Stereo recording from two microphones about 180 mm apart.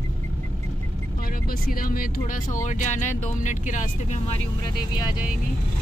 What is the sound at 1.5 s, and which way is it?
Speech, 55° left (ahead or behind).